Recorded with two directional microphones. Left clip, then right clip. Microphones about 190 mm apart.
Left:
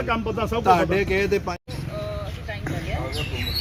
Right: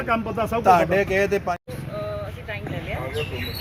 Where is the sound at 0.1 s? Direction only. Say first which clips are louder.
Right 3 dB; 50° right (ahead or behind).